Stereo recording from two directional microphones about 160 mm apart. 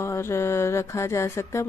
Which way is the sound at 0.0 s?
15° left (ahead or behind).